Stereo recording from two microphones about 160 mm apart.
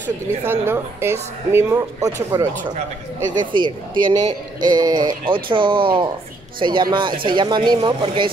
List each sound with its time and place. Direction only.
0.4 s a woman's voice: 15° right (ahead or behind)
3.5 s speech: 30° right (ahead or behind)